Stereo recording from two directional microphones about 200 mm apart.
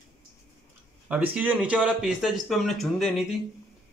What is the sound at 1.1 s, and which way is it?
Speech, 10° right (ahead or behind).